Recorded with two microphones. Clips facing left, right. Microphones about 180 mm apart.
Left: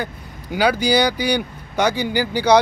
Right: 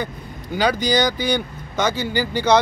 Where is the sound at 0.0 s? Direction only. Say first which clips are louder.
Even; 10° left (ahead or behind).